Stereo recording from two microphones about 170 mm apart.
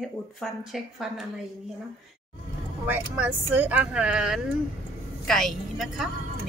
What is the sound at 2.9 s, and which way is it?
A woman's voice, 10° right (ahead or behind).